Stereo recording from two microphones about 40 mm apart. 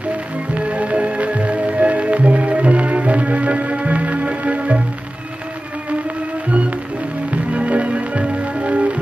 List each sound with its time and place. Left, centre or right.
0.6 s music: right
7.5 s music: right